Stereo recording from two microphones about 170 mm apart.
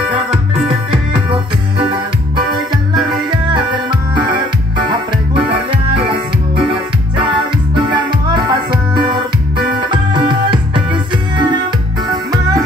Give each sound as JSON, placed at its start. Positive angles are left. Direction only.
{"t": 2.7, "sound": "music", "side_deg": -30}
{"t": 7.7, "sound": "music", "side_deg": -25}